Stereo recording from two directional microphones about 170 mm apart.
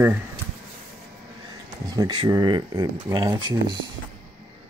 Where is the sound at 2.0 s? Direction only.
25° right (ahead or behind).